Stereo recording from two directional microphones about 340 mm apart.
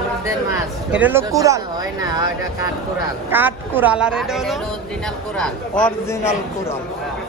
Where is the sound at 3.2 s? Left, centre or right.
Centre.